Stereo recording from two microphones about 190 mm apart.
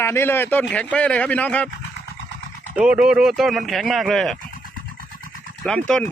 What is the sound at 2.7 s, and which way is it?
A man's voice, 5° right (ahead or behind).